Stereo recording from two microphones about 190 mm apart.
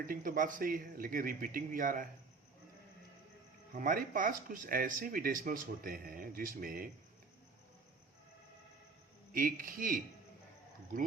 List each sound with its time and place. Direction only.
0.1 s speech: 45° right (ahead or behind)
3.8 s speech: 45° right (ahead or behind)
9.3 s speech: 45° right (ahead or behind)